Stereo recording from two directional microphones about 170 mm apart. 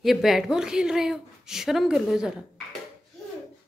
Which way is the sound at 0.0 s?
Centre (ahead or behind).